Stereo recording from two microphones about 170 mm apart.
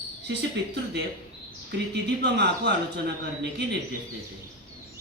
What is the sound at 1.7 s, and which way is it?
Speech, 75° right (ahead or behind).